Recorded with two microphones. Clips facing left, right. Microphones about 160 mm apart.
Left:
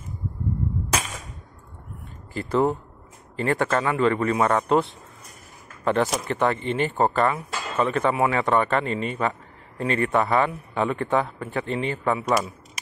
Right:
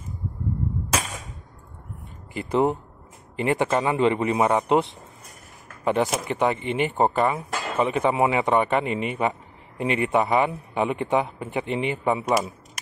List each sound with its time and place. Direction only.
2.3 s speech: 15° right (ahead or behind)
5.9 s speech: 10° right (ahead or behind)